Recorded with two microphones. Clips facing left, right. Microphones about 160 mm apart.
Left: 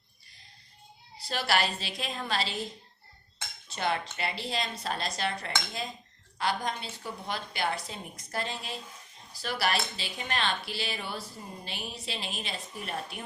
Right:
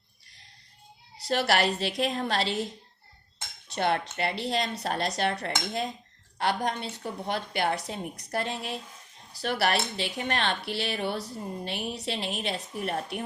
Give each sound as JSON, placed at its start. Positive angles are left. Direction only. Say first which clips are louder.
{"t": 1.3, "sound": "speech", "louder": "right 4 dB", "side_deg": -65}
{"t": 3.7, "sound": "speech", "louder": "right 4 dB", "side_deg": -60}